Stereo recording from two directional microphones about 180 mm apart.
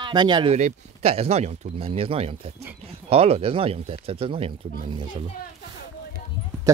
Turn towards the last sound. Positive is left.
turn(degrees=-25)  # may be behind; listen again after turning